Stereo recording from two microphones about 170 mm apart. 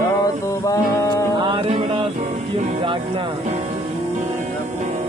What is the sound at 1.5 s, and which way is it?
Music, 30° right (ahead or behind).